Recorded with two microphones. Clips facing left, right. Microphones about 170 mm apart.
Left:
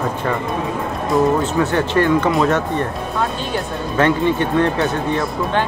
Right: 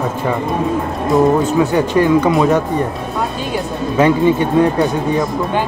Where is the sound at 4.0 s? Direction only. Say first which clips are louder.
Right 4 dB; 10° right (ahead or behind).